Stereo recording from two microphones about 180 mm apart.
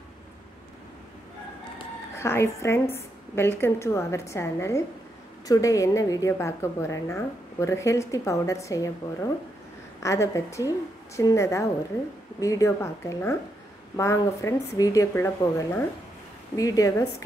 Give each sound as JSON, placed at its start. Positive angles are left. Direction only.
{"t": 2.1, "sound": "a woman's voice", "side_deg": 15}
{"t": 10.0, "sound": "a woman's voice", "side_deg": 15}